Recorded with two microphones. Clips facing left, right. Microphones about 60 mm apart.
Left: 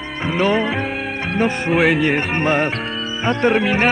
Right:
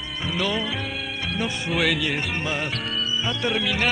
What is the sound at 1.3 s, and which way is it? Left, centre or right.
Speech, left.